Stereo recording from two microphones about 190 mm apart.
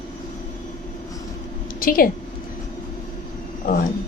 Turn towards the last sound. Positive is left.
turn(degrees=45)  # may be behind; listen again after turning